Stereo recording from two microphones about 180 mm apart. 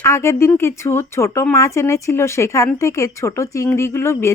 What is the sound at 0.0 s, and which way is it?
A woman's voice, 15° left (ahead or behind).